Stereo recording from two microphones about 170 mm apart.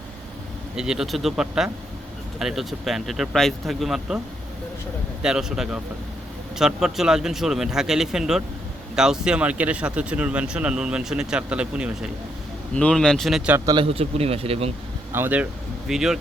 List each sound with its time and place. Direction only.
0.8 s speech: 5° right (ahead or behind)
5.2 s speech: 5° right (ahead or behind)
12.7 s speech: 5° left (ahead or behind)
13.7 s speech: 30° right (ahead or behind)
15.1 s speech: 10° right (ahead or behind)